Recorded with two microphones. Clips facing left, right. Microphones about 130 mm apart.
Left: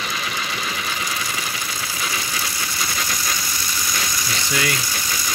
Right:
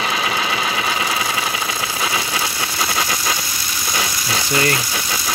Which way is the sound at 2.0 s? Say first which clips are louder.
Right 5 dB; 90° right.